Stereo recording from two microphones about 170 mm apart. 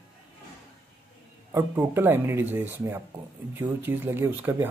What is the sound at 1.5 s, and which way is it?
Speech, 15° right (ahead or behind).